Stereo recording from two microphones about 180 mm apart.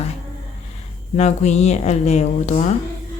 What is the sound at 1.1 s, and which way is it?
Speech, 40° left (ahead or behind).